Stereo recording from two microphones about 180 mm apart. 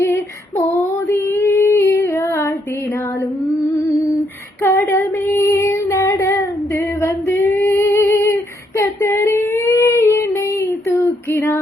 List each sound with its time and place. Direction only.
0.0 s female singing: 15° left (ahead or behind)
3.5 s music: 15° left (ahead or behind)
4.6 s female singing: 10° left (ahead or behind)